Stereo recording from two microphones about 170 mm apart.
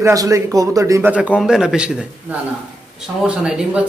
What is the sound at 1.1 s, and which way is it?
A man's voice, 5° right (ahead or behind).